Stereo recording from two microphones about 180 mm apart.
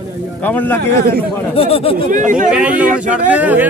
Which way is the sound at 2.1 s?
45° right (ahead or behind).